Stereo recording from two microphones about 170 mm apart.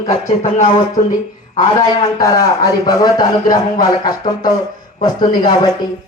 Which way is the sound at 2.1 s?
20° left (ahead or behind).